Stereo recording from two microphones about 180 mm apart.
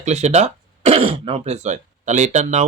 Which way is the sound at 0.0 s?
40° right (ahead or behind).